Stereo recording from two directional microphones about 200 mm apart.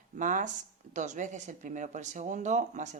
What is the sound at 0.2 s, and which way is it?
Speech, 40° right (ahead or behind).